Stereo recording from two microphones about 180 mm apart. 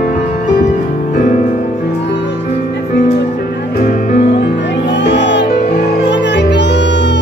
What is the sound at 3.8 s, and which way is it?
Music, 50° left (ahead or behind).